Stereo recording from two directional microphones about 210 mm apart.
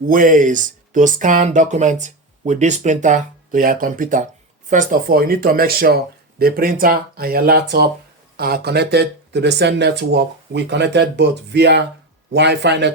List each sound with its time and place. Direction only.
0.1 s a man's voice: 40° right (ahead or behind)